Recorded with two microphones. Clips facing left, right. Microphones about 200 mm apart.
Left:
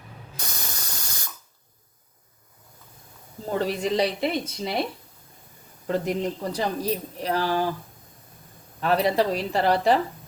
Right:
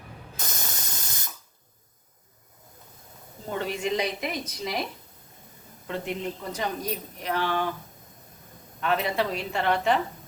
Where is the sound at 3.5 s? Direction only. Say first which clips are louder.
Left 4 dB; 35° left (ahead or behind).